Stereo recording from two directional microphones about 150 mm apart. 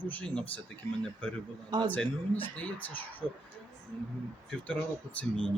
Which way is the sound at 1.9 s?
10° left (ahead or behind).